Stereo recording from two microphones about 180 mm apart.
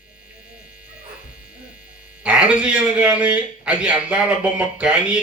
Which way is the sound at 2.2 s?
5° right (ahead or behind).